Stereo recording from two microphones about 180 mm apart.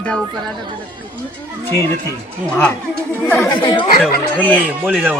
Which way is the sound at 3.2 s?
10° left (ahead or behind).